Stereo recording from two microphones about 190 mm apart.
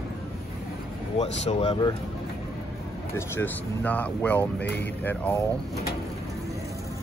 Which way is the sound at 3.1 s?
10° left (ahead or behind).